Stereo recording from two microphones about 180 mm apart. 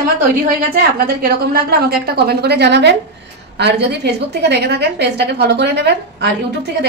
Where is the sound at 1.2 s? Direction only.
55° right (ahead or behind).